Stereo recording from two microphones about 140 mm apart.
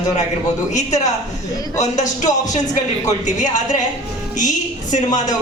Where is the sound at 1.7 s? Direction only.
60° left (ahead or behind).